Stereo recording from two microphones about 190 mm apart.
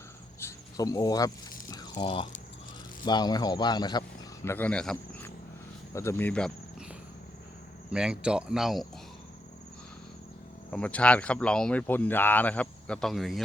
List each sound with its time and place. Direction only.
0.3 s insect: 15° left (ahead or behind)
1.7 s a sound: 25° left (ahead or behind)
3.0 s a man's voice: 20° left (ahead or behind)
4.4 s speech: 10° left (ahead or behind)
7.9 s speech: 5° right (ahead or behind)
10.7 s speech: 5° left (ahead or behind)